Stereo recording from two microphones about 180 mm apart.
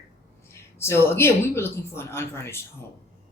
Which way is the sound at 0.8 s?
15° left (ahead or behind).